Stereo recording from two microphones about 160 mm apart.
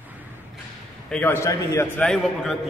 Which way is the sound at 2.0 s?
Centre (ahead or behind).